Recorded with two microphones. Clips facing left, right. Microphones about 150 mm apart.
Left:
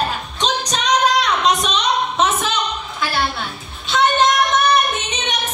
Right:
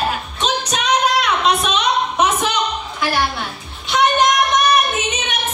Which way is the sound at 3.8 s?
15° right (ahead or behind).